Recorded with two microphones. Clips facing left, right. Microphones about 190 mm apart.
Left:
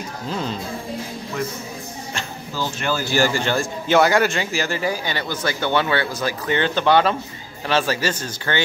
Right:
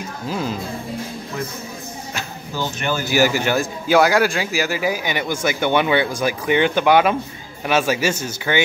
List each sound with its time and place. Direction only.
0.3 s speech: 5° right (ahead or behind)
2.5 s speech: 20° right (ahead or behind)